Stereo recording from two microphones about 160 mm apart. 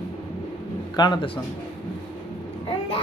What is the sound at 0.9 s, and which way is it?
Speech, 30° left (ahead or behind).